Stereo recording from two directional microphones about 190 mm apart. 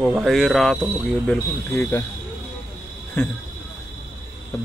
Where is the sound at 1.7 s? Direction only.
15° left (ahead or behind).